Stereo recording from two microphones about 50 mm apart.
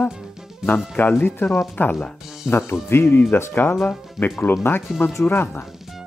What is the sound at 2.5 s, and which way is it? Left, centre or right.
Speech, left.